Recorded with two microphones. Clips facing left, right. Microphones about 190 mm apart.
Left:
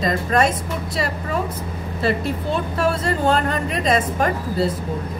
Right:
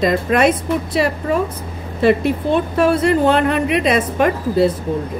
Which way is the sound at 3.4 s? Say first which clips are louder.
Right 6 dB; 70° right (ahead or behind).